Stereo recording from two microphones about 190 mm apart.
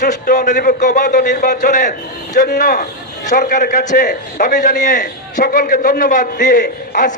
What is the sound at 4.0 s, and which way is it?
Speech, 55° left (ahead or behind).